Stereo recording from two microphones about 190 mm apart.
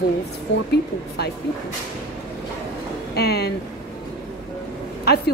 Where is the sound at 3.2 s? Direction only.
55° left (ahead or behind).